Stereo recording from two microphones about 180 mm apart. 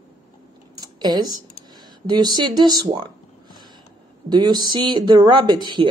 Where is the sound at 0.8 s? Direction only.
25° right (ahead or behind).